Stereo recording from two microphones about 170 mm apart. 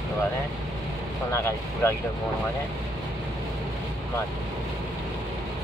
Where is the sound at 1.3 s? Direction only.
15° left (ahead or behind).